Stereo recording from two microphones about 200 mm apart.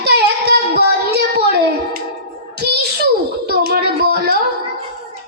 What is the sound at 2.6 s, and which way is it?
Music, 55° right (ahead or behind).